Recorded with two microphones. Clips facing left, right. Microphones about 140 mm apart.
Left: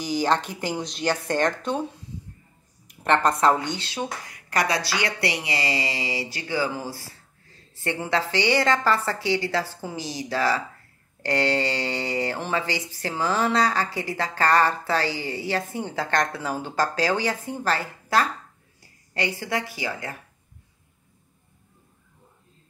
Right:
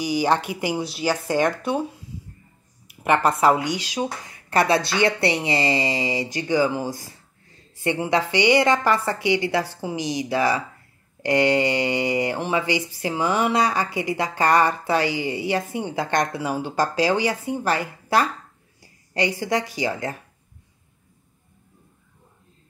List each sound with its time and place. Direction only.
0.0 s speech: 10° right (ahead or behind)
2.9 s speech: 10° right (ahead or behind)
4.3 s a woman's voice: 25° right (ahead or behind)